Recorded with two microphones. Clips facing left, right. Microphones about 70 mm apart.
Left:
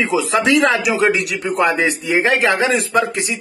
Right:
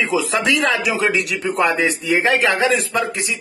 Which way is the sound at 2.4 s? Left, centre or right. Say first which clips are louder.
Left 1 dB; left.